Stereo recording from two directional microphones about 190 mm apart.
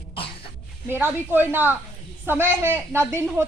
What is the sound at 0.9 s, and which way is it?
Speech, 10° right (ahead or behind).